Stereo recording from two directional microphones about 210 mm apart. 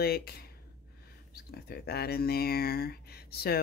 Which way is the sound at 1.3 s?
50° left (ahead or behind).